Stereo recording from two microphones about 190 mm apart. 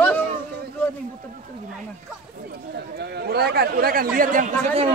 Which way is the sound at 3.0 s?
60° right (ahead or behind).